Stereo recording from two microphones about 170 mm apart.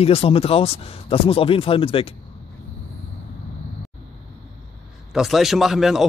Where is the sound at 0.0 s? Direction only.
35° left (ahead or behind).